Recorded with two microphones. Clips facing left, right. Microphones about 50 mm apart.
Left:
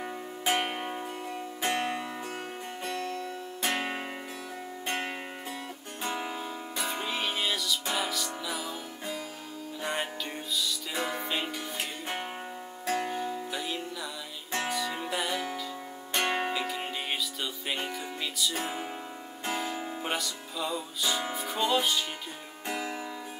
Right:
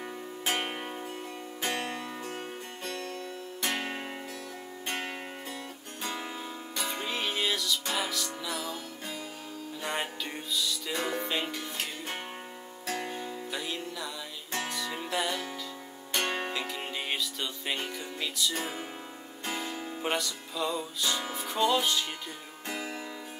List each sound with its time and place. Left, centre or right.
0.0 s zither: centre
1.6 s music: centre
10.5 s music: centre
12.8 s music: centre
13.1 s music: centre